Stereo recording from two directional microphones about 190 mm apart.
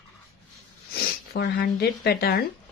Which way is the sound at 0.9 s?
55° left (ahead or behind).